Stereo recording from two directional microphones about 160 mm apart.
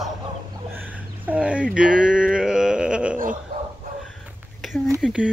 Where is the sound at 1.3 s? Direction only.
5° right (ahead or behind).